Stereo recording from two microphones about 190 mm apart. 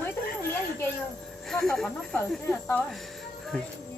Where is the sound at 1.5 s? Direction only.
Centre (ahead or behind).